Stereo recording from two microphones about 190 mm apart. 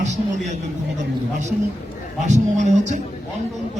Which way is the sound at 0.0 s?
40° right (ahead or behind).